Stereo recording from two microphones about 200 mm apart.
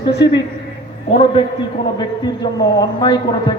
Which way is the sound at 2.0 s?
20° left (ahead or behind).